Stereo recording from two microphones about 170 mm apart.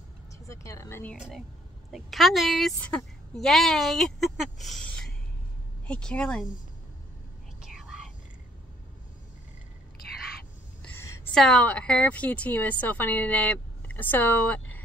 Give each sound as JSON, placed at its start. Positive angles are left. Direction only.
{"t": 0.5, "sound": "a woman's voice", "side_deg": 15}
{"t": 1.9, "sound": "a woman's voice", "side_deg": 0}
{"t": 7.6, "sound": "whispering", "side_deg": -5}
{"t": 11.3, "sound": "a woman's voice", "side_deg": 5}